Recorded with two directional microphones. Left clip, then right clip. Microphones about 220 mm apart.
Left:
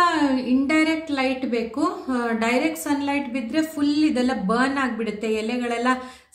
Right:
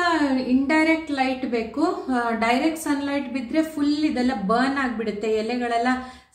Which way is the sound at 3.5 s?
50° left (ahead or behind).